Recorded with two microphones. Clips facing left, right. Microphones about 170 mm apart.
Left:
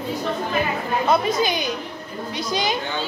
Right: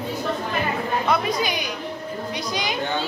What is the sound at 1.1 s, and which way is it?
A woman's voice, 25° left (ahead or behind).